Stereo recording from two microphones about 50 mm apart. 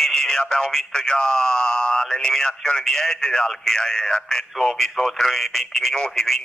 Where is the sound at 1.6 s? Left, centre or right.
Left.